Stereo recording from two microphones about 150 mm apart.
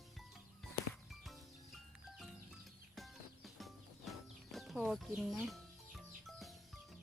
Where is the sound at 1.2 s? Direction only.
Centre (ahead or behind).